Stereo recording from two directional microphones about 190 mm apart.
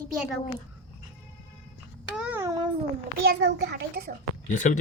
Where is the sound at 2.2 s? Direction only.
10° right (ahead or behind).